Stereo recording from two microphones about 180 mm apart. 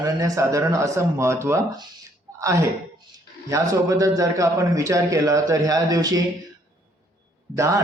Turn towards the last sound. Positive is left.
turn(degrees=-15)  # may be behind; listen again after turning